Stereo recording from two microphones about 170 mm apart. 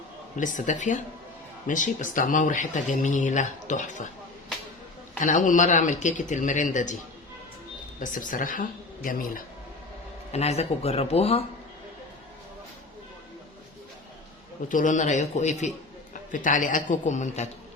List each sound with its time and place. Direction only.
0.3 s speech: 50° left (ahead or behind)
5.2 s speech: 50° left (ahead or behind)
7.9 s speech: 50° left (ahead or behind)
10.3 s speech: 40° left (ahead or behind)
14.7 s speech: 50° left (ahead or behind)